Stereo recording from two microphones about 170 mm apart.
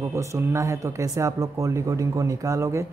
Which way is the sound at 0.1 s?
15° right (ahead or behind).